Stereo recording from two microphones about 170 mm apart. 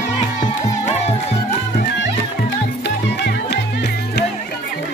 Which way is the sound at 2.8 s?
85° left.